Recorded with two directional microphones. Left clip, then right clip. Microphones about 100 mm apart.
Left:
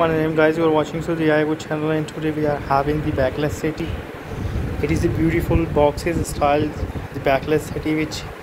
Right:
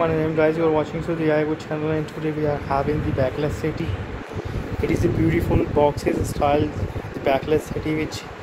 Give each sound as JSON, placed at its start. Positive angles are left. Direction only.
{"t": 0.0, "sound": "speech", "side_deg": 0}
{"t": 4.8, "sound": "speech", "side_deg": -20}